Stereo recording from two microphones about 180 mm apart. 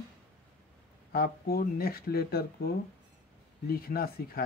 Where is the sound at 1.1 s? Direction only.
55° left (ahead or behind).